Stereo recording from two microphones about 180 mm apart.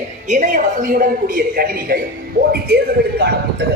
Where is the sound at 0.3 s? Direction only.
45° right (ahead or behind).